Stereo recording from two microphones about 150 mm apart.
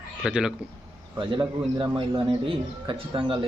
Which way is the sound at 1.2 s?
30° right (ahead or behind).